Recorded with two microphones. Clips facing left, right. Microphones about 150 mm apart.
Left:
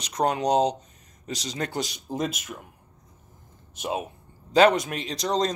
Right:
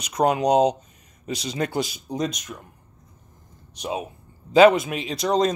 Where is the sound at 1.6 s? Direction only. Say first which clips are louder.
Right 5 dB; 10° right (ahead or behind).